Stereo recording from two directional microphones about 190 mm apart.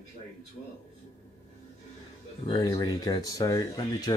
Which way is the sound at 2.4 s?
25° left (ahead or behind).